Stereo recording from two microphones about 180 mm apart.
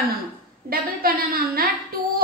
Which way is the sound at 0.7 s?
55° right (ahead or behind).